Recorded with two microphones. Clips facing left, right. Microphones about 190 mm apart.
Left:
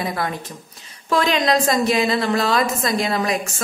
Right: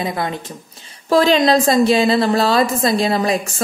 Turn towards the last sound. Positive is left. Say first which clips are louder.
# right 4 dB
turn(degrees=-30)  # may be behind; listen again after turning